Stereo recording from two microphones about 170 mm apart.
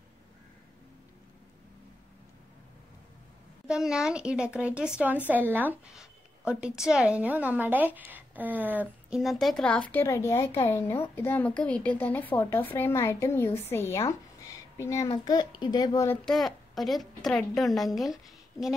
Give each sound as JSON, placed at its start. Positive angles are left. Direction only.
{"t": 3.6, "sound": "a woman's voice", "side_deg": -5}
{"t": 9.2, "sound": "a woman's voice", "side_deg": 0}
{"t": 16.3, "sound": "a woman's voice", "side_deg": 0}